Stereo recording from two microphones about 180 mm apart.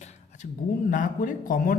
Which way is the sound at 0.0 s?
40° left (ahead or behind).